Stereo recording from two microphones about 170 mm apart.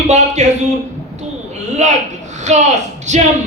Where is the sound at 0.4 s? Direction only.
45° right (ahead or behind).